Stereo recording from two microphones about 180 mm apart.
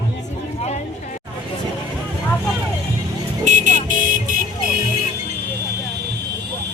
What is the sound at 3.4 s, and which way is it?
Vehicle, 45° right (ahead or behind).